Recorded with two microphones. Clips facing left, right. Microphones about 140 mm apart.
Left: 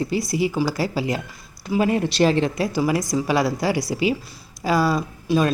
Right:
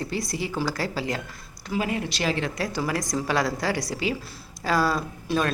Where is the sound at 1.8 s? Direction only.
35° left (ahead or behind).